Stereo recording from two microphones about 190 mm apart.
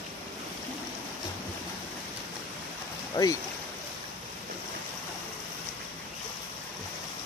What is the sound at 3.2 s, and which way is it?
Speech, 20° left (ahead or behind).